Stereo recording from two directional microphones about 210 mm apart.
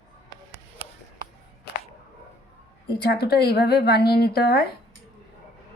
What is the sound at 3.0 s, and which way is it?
A woman's voice, 50° left (ahead or behind).